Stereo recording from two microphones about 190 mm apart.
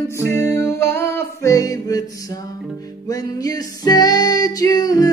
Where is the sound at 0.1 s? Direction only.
15° left (ahead or behind).